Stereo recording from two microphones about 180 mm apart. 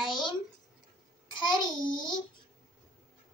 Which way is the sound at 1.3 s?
25° left (ahead or behind).